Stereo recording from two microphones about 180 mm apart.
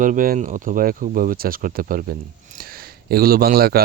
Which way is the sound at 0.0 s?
50° right (ahead or behind).